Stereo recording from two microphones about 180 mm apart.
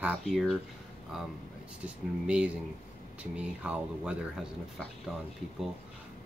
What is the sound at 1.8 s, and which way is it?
Speech, 5° right (ahead or behind).